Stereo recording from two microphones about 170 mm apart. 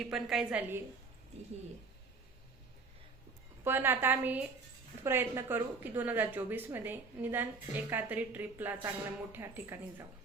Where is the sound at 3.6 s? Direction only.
15° right (ahead or behind).